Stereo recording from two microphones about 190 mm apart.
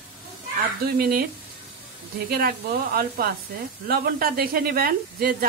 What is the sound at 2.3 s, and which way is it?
Speech, 50° right (ahead or behind).